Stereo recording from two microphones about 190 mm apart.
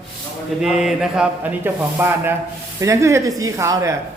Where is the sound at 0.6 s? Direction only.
5° right (ahead or behind).